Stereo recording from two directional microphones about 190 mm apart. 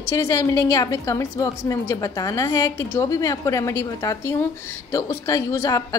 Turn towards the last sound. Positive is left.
turn(degrees=15)  # may be behind; listen again after turning